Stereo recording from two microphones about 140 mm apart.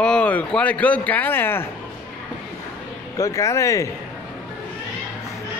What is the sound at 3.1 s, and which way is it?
Speech, 25° left (ahead or behind).